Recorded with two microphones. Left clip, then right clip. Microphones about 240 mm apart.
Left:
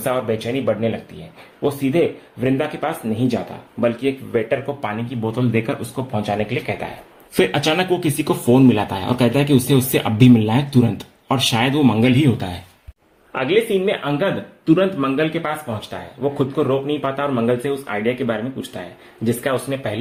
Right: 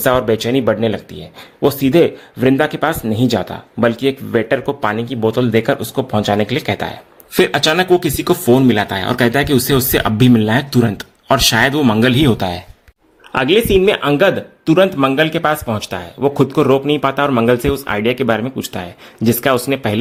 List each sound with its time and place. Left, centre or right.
0.0 s speech: right